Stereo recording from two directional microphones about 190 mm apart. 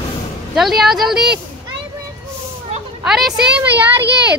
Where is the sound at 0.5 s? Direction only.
Centre (ahead or behind).